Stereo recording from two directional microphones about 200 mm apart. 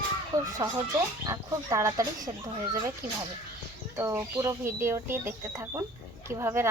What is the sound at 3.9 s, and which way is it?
Speech, 15° right (ahead or behind).